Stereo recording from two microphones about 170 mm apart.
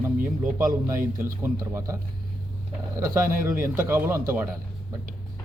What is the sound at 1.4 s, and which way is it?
Speech, 15° right (ahead or behind).